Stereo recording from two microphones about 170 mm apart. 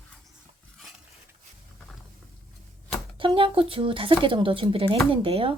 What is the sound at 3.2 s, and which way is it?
Speech, 30° right (ahead or behind).